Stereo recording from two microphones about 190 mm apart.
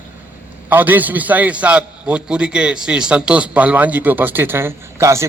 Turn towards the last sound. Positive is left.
turn(degrees=-15)  # may be behind; listen again after turning